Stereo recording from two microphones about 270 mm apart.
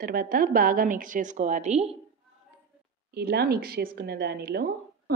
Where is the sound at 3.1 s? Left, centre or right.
Right.